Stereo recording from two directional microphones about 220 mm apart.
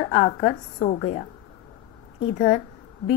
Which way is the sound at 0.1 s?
25° left (ahead or behind).